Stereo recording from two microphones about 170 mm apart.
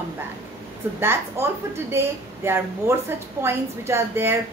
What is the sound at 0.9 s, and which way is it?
A woman's voice, 15° right (ahead or behind).